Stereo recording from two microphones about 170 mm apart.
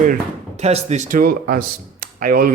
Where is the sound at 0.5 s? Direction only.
40° right (ahead or behind); by 2.5 s 55° right (ahead or behind).